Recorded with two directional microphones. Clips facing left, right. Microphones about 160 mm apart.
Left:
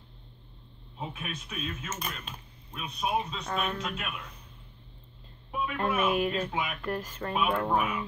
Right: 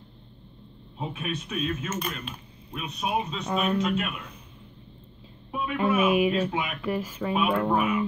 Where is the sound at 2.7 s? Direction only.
10° right (ahead or behind).